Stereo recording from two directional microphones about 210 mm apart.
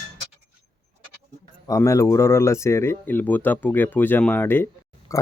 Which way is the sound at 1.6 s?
15° left (ahead or behind).